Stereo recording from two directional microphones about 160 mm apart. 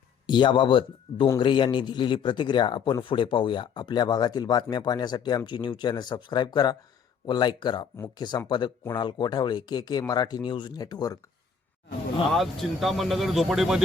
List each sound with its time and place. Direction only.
0.3 s speech: 30° left (ahead or behind)
12.3 s speech: centre (ahead or behind)